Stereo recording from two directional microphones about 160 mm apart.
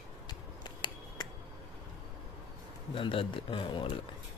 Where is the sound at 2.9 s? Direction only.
30° left (ahead or behind).